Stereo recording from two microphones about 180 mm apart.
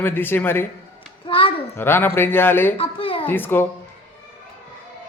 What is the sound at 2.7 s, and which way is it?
Speech, 30° left (ahead or behind).